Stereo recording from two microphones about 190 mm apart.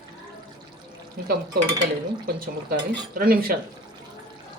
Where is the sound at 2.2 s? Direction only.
50° right (ahead or behind).